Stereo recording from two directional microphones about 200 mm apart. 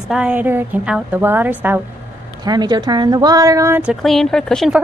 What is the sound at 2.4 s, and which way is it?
A woman's voice, 20° right (ahead or behind).